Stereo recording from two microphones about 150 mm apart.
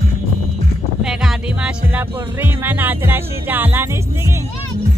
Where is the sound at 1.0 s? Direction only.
5° right (ahead or behind).